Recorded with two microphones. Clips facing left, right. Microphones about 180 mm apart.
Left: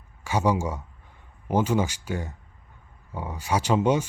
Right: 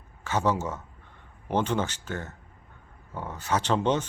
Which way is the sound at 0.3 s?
10° left (ahead or behind).